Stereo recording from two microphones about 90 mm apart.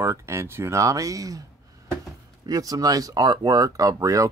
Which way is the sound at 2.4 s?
40° right (ahead or behind).